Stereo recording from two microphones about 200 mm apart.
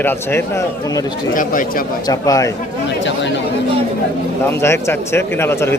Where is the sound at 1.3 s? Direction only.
45° left (ahead or behind).